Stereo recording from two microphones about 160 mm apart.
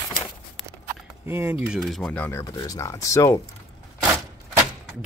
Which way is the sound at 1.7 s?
Centre (ahead or behind).